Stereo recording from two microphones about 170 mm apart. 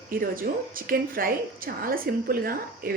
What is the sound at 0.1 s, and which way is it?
Speech, 60° right (ahead or behind).